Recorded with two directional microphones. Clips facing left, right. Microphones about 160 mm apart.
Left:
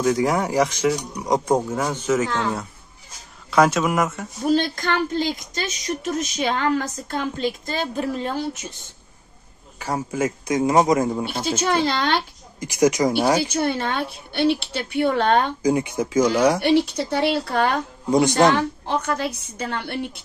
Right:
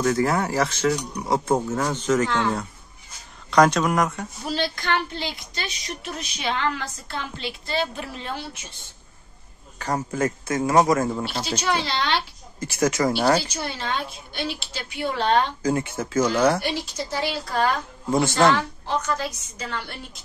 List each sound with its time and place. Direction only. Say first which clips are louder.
0.0 s speech: left 2 dB; 15° left (ahead or behind)
3.4 s speech: even; 5° left (ahead or behind)
4.5 s a woman's voice: left 5 dB; 50° left (ahead or behind)
9.8 s speech: left 1 dB; 10° left (ahead or behind)
11.8 s a woman's voice: left 4 dB; 45° left (ahead or behind)
12.5 s speech: left 4 dB; 15° left (ahead or behind)
13.4 s a woman's voice: left 8 dB; 55° left (ahead or behind)
15.6 s speech: left 4 dB; 15° left (ahead or behind)
16.6 s a woman's voice: left 10 dB; 65° left (ahead or behind)
18.1 s speech: left 3 dB; 20° left (ahead or behind)
18.5 s a woman's voice: left 2 dB; 55° left (ahead or behind)